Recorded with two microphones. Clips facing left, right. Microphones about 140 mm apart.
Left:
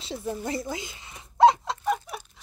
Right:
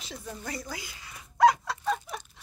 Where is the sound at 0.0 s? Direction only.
25° left (ahead or behind).